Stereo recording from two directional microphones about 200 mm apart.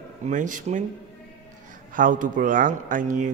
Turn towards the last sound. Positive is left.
turn(degrees=-40)  # may be behind; listen again after turning